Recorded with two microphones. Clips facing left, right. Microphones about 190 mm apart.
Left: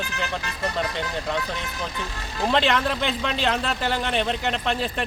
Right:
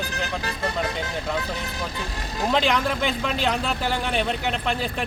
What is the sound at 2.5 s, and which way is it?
A man's voice, centre (ahead or behind).